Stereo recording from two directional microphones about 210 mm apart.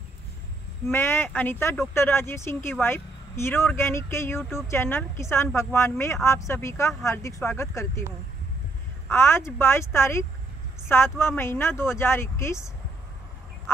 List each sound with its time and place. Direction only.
0.8 s speech: 10° left (ahead or behind)
9.1 s speech: 10° left (ahead or behind)